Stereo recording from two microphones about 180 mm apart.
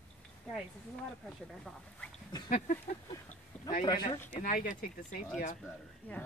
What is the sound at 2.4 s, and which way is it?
Speech, 45° left (ahead or behind).